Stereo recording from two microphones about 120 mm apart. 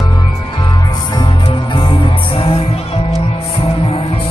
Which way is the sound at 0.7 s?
35° left (ahead or behind).